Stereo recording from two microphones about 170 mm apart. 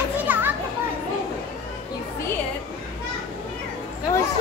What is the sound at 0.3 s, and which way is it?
Children playing, 10° right (ahead or behind).